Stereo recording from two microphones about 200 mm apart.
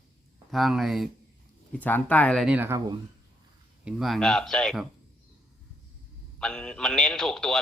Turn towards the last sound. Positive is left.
turn(degrees=5)  # may be behind; listen again after turning